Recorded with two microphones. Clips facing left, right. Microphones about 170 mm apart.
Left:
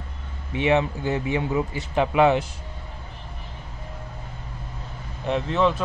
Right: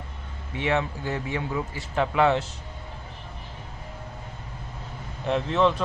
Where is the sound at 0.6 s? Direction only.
20° left (ahead or behind).